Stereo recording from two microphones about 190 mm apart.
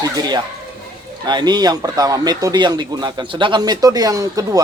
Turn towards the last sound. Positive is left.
turn(degrees=-20)  # may be behind; listen again after turning